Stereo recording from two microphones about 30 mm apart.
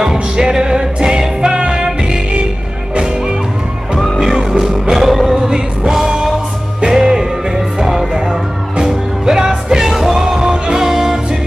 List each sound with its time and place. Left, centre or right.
0.0 s music: right
4.2 s music: centre